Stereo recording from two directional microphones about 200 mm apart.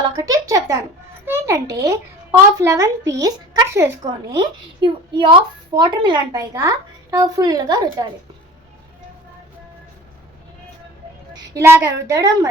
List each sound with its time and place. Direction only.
0.2 s a child's voice: 15° right (ahead or behind)
11.5 s a child's voice: 15° right (ahead or behind)